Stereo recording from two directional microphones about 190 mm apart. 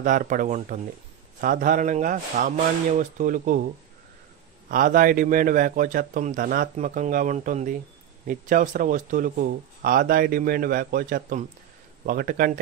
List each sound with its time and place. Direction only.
0.0 s speech: 40° right (ahead or behind)
4.6 s speech: 45° right (ahead or behind)